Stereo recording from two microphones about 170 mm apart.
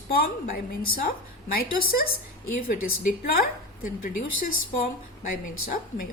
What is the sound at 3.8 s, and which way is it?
A woman's voice, 55° left (ahead or behind).